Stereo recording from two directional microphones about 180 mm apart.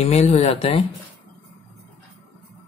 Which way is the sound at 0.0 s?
35° left (ahead or behind).